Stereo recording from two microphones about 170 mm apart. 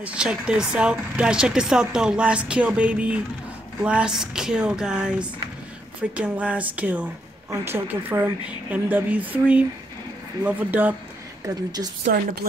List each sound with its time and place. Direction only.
0.0 s speech: 5° right (ahead or behind)
11.4 s a woman's voice: 20° right (ahead or behind)
12.0 s speech: 65° right (ahead or behind)